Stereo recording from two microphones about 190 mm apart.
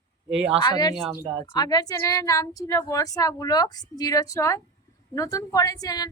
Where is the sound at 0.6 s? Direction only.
20° left (ahead or behind).